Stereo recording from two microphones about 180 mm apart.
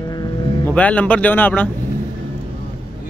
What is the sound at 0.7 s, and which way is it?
Speech, 10° left (ahead or behind).